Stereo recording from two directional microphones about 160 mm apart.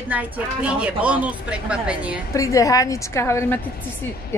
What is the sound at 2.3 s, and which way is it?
Speech, 20° left (ahead or behind).